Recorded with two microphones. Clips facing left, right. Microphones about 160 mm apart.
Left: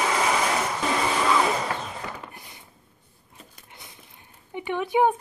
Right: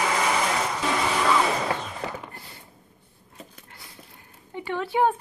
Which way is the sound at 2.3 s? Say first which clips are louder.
Right 1 dB; 15° left (ahead or behind).